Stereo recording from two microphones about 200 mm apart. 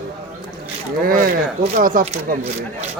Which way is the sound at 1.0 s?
45° right (ahead or behind).